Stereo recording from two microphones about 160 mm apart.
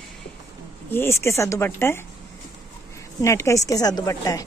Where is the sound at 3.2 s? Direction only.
20° left (ahead or behind).